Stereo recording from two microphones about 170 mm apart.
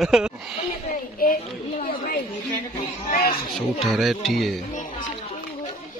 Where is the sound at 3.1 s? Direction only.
50° left (ahead or behind).